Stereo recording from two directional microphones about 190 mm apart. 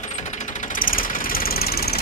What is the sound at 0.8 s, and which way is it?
Vehicle, 50° left (ahead or behind).